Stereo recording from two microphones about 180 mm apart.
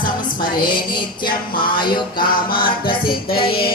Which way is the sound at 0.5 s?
25° left (ahead or behind).